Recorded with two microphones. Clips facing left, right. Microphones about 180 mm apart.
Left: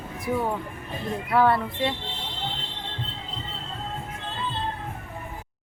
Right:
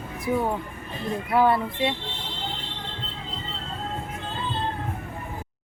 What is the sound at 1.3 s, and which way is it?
Speech, 15° right (ahead or behind).